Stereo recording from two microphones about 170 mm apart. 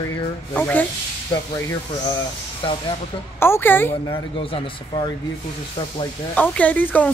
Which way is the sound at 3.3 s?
15° left (ahead or behind).